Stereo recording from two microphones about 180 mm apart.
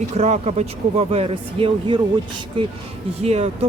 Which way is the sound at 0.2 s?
40° right (ahead or behind).